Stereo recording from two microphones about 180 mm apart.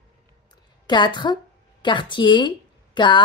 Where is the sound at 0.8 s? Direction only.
25° left (ahead or behind).